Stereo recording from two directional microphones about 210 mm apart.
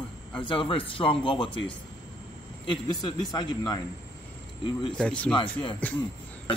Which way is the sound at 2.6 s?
20° left (ahead or behind).